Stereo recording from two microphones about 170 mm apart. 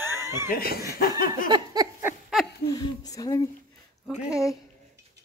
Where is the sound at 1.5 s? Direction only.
25° right (ahead or behind).